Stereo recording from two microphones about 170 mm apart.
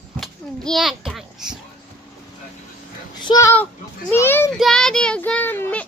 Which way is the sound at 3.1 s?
25° left (ahead or behind).